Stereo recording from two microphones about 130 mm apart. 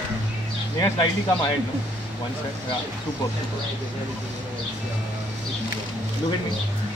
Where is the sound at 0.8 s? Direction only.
35° left (ahead or behind).